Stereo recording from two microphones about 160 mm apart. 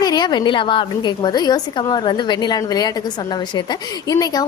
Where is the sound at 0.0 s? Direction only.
25° left (ahead or behind).